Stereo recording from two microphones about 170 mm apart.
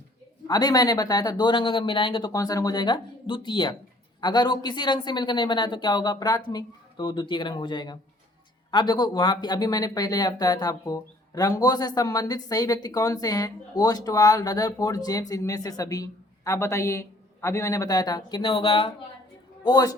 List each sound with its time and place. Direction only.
0.4 s speech: 25° left (ahead or behind)